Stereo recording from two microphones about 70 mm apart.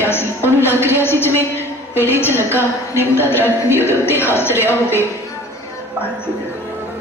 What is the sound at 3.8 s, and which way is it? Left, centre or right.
Speech, left.